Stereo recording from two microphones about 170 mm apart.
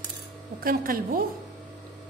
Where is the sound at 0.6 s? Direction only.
55° right (ahead or behind).